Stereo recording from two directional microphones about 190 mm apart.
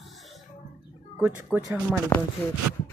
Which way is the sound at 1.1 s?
10° right (ahead or behind).